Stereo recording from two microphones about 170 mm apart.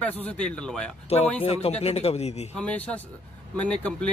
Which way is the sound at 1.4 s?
35° left (ahead or behind).